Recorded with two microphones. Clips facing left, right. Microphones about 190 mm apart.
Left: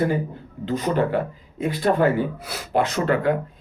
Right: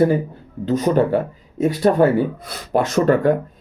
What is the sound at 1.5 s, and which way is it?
Speech, 45° right (ahead or behind).